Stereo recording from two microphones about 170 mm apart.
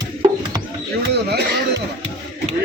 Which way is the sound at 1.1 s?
70° right (ahead or behind).